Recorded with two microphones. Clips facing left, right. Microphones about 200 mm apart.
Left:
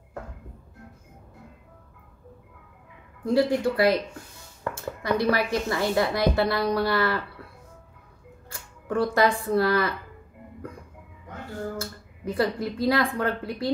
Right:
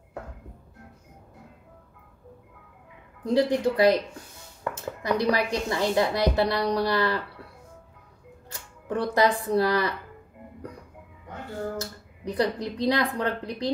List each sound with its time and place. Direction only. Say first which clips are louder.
3.3 s a woman's voice: even; 20° right (ahead or behind)
5.0 s a woman's voice: left 1 dB; 15° right (ahead or behind)
8.8 s speech: left 1 dB; 20° right (ahead or behind)
11.7 s speech: even; 20° right (ahead or behind)